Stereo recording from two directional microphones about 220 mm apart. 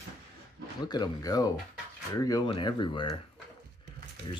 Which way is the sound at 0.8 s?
20° left (ahead or behind).